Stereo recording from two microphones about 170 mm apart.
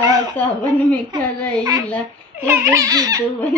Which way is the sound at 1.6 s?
20° right (ahead or behind).